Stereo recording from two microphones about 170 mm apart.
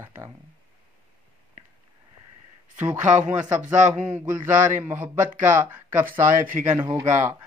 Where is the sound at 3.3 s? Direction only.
10° right (ahead or behind).